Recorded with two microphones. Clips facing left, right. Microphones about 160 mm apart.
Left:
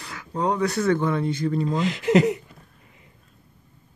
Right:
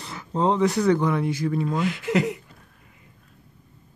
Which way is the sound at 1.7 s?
20° left (ahead or behind).